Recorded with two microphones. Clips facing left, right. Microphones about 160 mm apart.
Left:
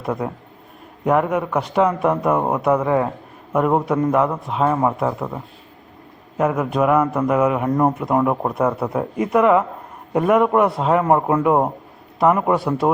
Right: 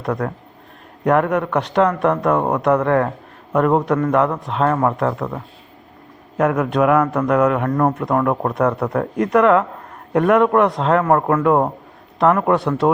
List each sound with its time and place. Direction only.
0.0 s a man's voice: 5° left (ahead or behind)
7.7 s a man's voice: 15° left (ahead or behind)